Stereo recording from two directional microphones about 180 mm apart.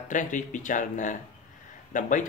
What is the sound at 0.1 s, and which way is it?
Speech, 45° left (ahead or behind).